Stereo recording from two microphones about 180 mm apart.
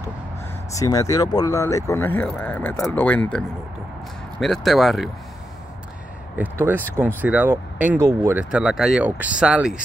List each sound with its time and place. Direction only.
0.7 s speech: 20° left (ahead or behind); by 5.1 s centre (ahead or behind)
6.3 s speech: 10° right (ahead or behind)